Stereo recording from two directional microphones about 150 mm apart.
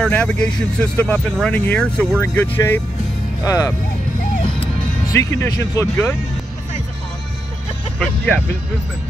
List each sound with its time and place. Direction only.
0.0 s speech: 5° left (ahead or behind); by 3.7 s 25° left (ahead or behind)
5.1 s speech: 20° left (ahead or behind)